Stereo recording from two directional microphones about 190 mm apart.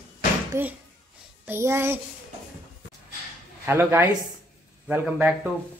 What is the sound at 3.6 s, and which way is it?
Speech, 10° right (ahead or behind).